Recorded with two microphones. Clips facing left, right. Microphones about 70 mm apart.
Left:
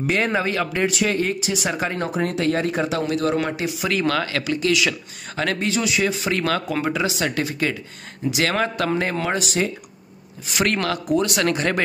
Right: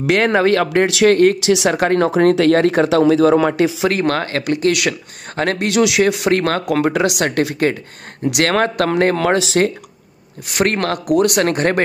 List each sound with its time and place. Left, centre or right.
0.0 s speech: right
0.8 s speech: right
3.4 s speech: right
3.9 s speech: right
5.7 s speech: right
6.7 s speech: right
9.1 s speech: right
10.5 s speech: right